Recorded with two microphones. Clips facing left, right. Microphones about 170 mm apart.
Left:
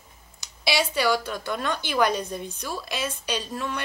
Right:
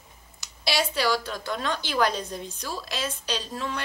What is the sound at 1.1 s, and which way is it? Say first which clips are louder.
Speech: left 2 dB; 5° left (ahead or behind).